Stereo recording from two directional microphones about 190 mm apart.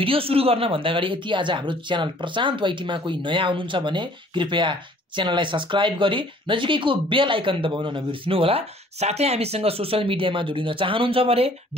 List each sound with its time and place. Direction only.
0.0 s speech: 30° right (ahead or behind)